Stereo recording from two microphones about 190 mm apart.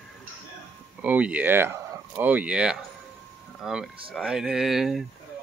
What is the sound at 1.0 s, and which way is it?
Speech, 5° right (ahead or behind).